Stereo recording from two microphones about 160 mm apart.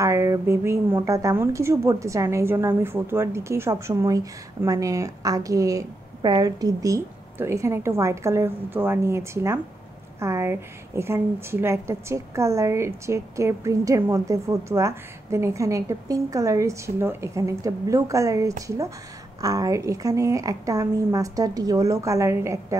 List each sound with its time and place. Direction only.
0.0 s a woman's voice: 20° right (ahead or behind)